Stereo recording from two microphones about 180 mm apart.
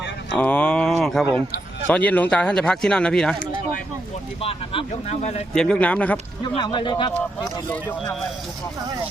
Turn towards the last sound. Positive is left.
turn(degrees=25)  # may be behind; listen again after turning